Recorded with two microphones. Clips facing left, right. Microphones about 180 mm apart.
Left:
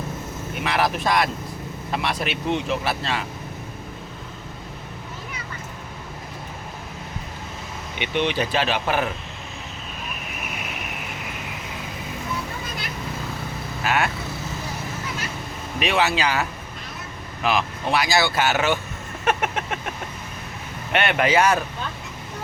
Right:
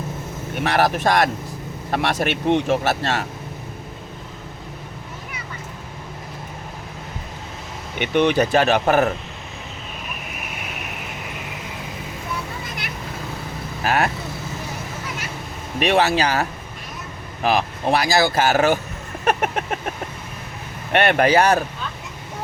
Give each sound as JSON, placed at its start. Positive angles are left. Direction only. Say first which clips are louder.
{"t": 0.6, "sound": "speech", "louder": "right 4 dB", "side_deg": -45}
{"t": 7.9, "sound": "speech", "louder": "right 6 dB", "side_deg": -45}
{"t": 13.8, "sound": "vehicle", "louder": "right 3 dB", "side_deg": -40}
{"t": 15.8, "sound": "speech", "louder": "right 4 dB", "side_deg": -40}
{"t": 20.9, "sound": "speech", "louder": "right 4 dB", "side_deg": -40}